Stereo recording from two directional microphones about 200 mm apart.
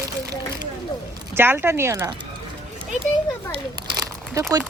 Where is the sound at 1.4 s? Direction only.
10° right (ahead or behind).